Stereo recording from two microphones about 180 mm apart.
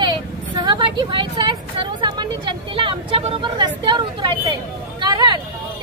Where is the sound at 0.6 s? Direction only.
25° right (ahead or behind).